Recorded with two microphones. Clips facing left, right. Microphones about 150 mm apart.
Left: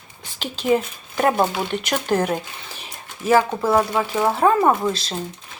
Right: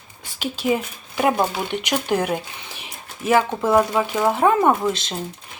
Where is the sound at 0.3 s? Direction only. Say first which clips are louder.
Left 2 dB; 10° right (ahead or behind).